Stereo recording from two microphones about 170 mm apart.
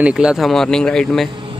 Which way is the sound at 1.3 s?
30° right (ahead or behind).